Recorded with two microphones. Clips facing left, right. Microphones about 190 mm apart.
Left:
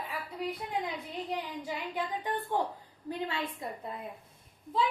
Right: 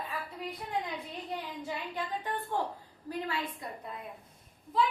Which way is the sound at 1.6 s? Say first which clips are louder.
Left 2 dB; 15° left (ahead or behind).